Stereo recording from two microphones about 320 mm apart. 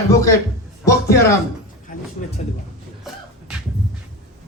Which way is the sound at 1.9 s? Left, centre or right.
Left.